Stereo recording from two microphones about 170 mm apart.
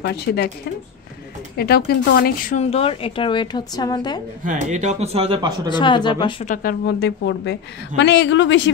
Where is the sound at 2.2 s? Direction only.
55° left (ahead or behind).